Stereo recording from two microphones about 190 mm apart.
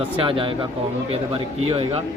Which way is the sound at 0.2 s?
25° right (ahead or behind).